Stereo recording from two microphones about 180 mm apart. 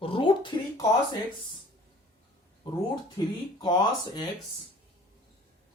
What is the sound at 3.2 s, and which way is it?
Speech, 20° left (ahead or behind).